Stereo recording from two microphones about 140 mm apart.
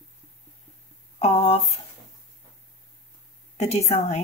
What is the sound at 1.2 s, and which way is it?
Speech, 45° left (ahead or behind).